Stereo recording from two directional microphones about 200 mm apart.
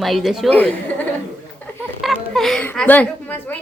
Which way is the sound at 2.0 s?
Centre (ahead or behind).